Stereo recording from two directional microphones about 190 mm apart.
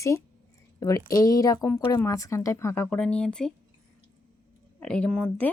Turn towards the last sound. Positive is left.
turn(degrees=5)  # may be behind; listen again after turning